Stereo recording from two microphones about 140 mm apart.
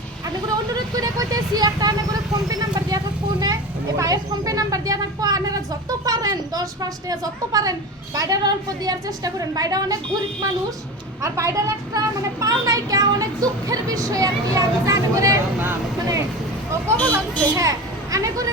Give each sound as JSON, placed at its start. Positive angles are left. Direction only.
{"t": 0.9, "sound": "a woman's voice", "side_deg": -25}
{"t": 2.5, "sound": "vehicle", "side_deg": -25}
{"t": 3.4, "sound": "a woman's voice", "side_deg": -25}
{"t": 11.2, "sound": "a woman's voice", "side_deg": -20}